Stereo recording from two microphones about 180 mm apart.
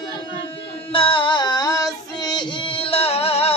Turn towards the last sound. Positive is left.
turn(degrees=35)  # may be behind; listen again after turning